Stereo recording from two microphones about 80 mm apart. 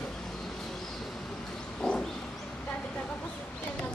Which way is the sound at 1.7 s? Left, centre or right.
Centre.